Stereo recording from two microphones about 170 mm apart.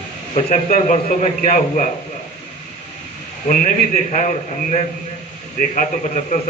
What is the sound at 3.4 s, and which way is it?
A man's voice, 45° left (ahead or behind).